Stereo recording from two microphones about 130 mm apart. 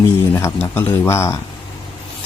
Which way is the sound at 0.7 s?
15° left (ahead or behind).